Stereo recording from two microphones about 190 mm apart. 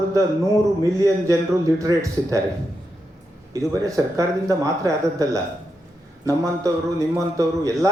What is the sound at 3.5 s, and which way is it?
A man's voice, 15° right (ahead or behind).